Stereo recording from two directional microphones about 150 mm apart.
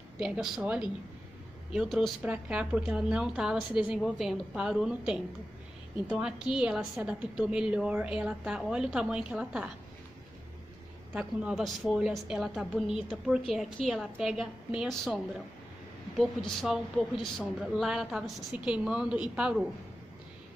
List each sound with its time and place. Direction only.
0.2 s a woman's voice: 5° right (ahead or behind)
11.1 s a woman's voice: 5° right (ahead or behind)
16.2 s a woman's voice: centre (ahead or behind)